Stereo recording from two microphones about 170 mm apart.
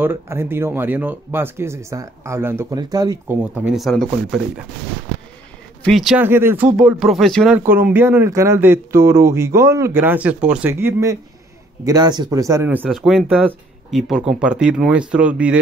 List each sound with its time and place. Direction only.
0.0 s speech: 15° right (ahead or behind)
3.6 s speech: centre (ahead or behind)
5.9 s speech: centre (ahead or behind)
6.2 s speech: 15° right (ahead or behind)
7.5 s speech: 10° right (ahead or behind)
12.8 s speech: centre (ahead or behind)